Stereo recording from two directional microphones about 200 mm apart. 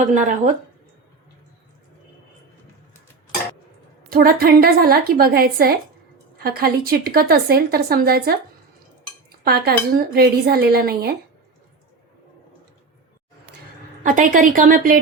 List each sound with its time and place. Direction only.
0.1 s a woman's voice: 40° right (ahead or behind)
4.1 s a woman's voice: 50° right (ahead or behind)
9.4 s a woman's voice: 50° right (ahead or behind)
14.0 s a woman's voice: 40° right (ahead or behind)